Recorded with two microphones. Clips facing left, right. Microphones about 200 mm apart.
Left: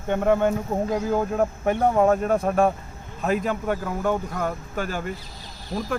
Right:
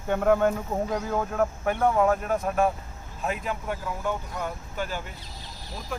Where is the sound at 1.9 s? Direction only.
35° left (ahead or behind).